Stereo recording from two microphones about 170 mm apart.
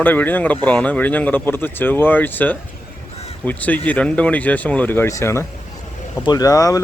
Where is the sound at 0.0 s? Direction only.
10° left (ahead or behind).